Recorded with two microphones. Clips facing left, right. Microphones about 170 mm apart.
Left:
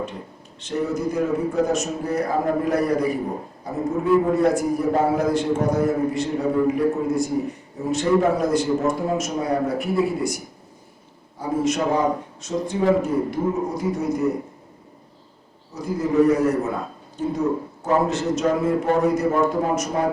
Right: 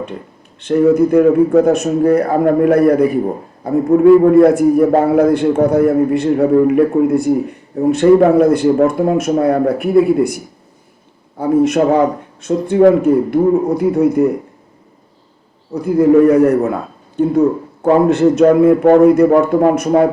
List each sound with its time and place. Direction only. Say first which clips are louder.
0.6 s a man's voice: right 13 dB; 60° right (ahead or behind)
15.7 s a man's voice: right 12 dB; 60° right (ahead or behind)